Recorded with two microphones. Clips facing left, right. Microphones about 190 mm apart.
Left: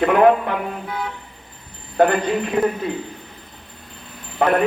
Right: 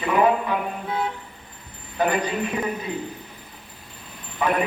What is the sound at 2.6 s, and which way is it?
Speech, 50° left (ahead or behind).